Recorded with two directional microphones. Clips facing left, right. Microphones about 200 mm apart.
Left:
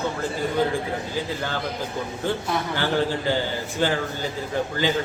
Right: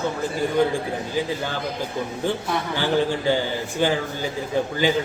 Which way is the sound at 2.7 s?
15° right (ahead or behind).